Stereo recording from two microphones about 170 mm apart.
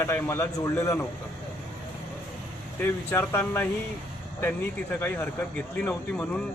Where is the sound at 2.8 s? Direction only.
15° left (ahead or behind).